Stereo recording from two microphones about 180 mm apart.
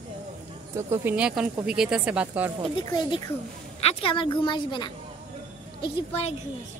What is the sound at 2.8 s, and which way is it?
A woman's voice, 25° left (ahead or behind).